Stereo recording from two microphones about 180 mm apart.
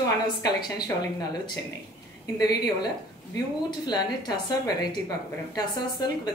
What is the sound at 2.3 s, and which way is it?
A woman's voice, 20° left (ahead or behind).